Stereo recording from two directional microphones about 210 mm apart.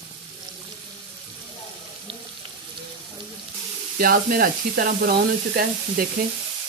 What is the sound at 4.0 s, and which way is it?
Speech, 45° right (ahead or behind).